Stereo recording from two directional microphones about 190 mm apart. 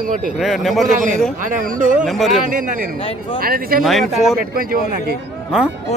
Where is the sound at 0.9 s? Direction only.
40° right (ahead or behind).